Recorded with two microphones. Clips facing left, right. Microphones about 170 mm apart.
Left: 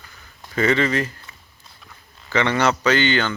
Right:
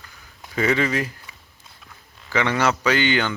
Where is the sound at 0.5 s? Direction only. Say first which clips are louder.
Left 2 dB; 10° right (ahead or behind).